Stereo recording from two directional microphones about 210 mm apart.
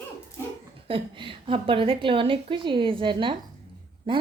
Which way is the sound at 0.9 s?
25° right (ahead or behind).